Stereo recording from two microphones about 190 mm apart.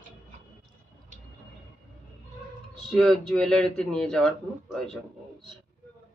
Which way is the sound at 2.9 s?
Centre (ahead or behind).